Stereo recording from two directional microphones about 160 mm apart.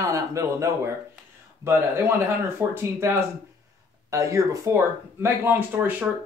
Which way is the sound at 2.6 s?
15° right (ahead or behind).